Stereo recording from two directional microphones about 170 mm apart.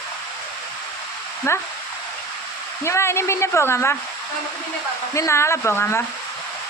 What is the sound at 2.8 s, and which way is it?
Speech, 15° left (ahead or behind).